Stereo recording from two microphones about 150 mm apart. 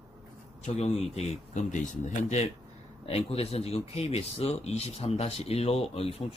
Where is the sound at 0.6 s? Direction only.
45° left (ahead or behind).